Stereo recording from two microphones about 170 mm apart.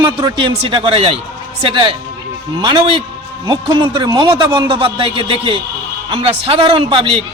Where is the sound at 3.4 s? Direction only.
25° right (ahead or behind).